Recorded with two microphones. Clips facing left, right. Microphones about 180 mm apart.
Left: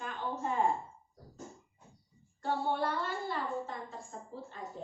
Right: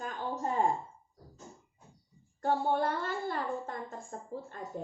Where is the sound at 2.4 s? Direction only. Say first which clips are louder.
Right 3 dB; 45° right (ahead or behind).